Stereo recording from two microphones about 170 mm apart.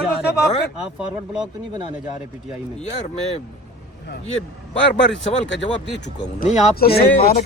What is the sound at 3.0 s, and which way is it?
Speech, 40° left (ahead or behind).